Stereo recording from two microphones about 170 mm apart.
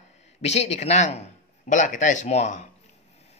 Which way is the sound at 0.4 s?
40° left (ahead or behind).